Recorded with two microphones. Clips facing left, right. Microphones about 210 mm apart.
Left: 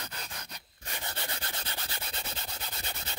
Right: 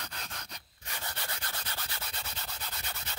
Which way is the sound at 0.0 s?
5° left (ahead or behind).